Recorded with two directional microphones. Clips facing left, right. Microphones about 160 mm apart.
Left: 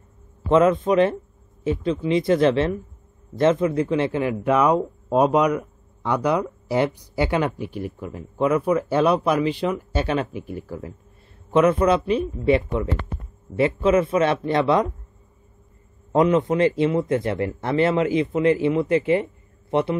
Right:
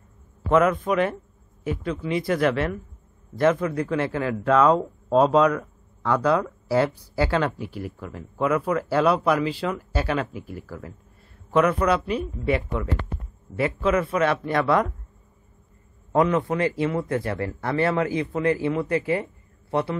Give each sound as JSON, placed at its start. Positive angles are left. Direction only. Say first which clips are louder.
{"t": 0.5, "sound": "speech", "louder": "left 3 dB", "side_deg": 25}
{"t": 16.1, "sound": "speech", "louder": "left 3 dB", "side_deg": 20}